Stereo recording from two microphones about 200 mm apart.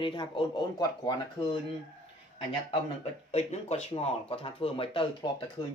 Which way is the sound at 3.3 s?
30° left (ahead or behind).